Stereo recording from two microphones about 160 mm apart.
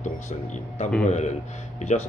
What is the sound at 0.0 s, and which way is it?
Music, 50° left (ahead or behind).